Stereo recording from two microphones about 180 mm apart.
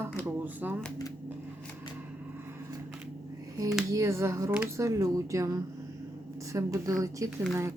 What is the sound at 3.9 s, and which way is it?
Speech, 15° right (ahead or behind).